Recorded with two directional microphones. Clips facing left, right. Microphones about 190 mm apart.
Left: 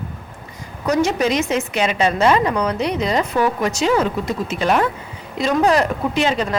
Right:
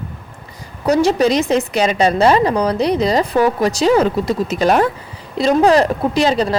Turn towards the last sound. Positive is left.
turn(degrees=-35)  # may be behind; listen again after turning